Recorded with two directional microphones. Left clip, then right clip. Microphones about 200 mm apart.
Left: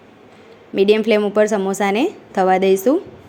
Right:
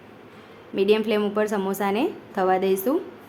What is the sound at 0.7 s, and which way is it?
A woman's voice, 30° left (ahead or behind).